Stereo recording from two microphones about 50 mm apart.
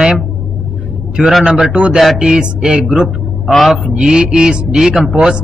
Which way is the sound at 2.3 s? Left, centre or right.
Centre.